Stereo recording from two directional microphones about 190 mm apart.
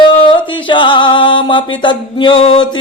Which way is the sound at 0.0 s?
25° left (ahead or behind).